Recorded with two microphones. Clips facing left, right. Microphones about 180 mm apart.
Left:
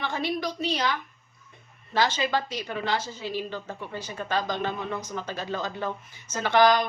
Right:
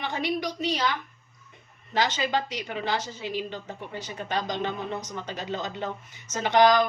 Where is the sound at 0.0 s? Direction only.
15° right (ahead or behind).